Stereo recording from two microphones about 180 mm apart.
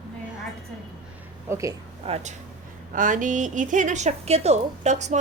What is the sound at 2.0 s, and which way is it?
Speech, 35° right (ahead or behind).